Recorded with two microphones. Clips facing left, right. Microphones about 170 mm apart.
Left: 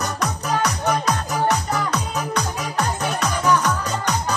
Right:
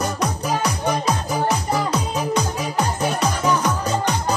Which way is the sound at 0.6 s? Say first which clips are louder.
Left 2 dB; 10° right (ahead or behind).